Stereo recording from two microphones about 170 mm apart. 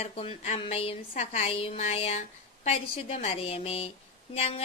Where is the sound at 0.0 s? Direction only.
35° left (ahead or behind).